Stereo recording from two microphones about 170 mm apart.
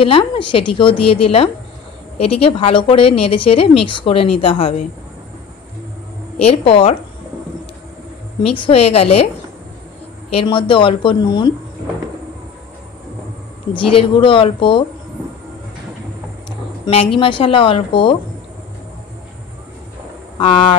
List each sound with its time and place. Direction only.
0.0 s speech: 30° left (ahead or behind)
6.3 s speech: 35° left (ahead or behind)
8.4 s speech: 35° left (ahead or behind)
10.3 s a woman's voice: 30° left (ahead or behind)
13.7 s a woman's voice: 30° left (ahead or behind)
16.4 s speech: 30° left (ahead or behind)
20.3 s speech: 30° left (ahead or behind)